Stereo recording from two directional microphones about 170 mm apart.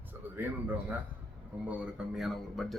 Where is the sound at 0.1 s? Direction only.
10° right (ahead or behind).